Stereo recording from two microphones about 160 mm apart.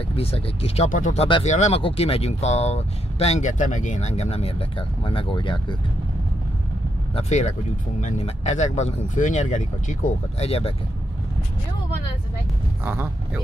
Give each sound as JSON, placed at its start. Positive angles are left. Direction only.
{"t": 0.1, "sound": "speech", "side_deg": 40}
{"t": 1.2, "sound": "speech", "side_deg": 40}
{"t": 7.2, "sound": "speech", "side_deg": 45}
{"t": 12.8, "sound": "speech", "side_deg": -10}